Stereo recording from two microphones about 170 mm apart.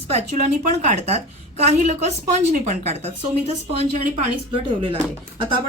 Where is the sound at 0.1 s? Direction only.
40° right (ahead or behind).